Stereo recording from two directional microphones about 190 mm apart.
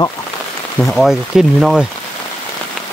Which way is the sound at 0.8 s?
Centre (ahead or behind).